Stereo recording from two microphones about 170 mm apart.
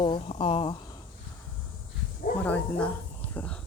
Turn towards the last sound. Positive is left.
turn(degrees=5)  # may be behind; listen again after turning